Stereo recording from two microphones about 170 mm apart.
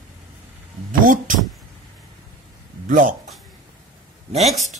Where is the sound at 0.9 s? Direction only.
50° right (ahead or behind).